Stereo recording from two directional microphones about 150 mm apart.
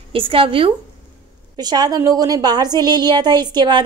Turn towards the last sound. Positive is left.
turn(degrees=-30)  # may be behind; listen again after turning